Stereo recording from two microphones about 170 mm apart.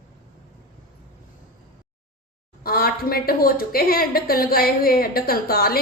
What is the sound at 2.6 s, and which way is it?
A woman's voice, 60° left (ahead or behind).